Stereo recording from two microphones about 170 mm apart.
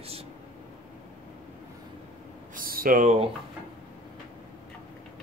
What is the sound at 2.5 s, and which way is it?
Speech, 55° right (ahead or behind).